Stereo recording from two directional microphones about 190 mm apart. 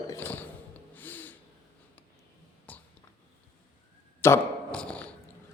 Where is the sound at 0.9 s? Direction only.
10° left (ahead or behind).